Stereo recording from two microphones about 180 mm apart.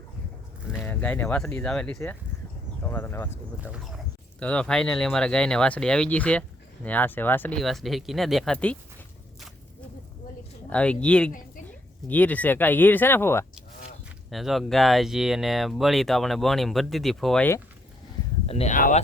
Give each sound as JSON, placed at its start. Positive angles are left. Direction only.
{"t": 0.8, "sound": "speech", "side_deg": 10}
{"t": 3.6, "sound": "speech", "side_deg": -5}
{"t": 4.4, "sound": "speech", "side_deg": 5}
{"t": 10.7, "sound": "speech", "side_deg": 5}
{"t": 14.3, "sound": "speech", "side_deg": 0}
{"t": 18.4, "sound": "speech", "side_deg": 35}